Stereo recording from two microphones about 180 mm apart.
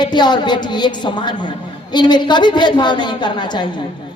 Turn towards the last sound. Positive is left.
turn(degrees=25)  # may be behind; listen again after turning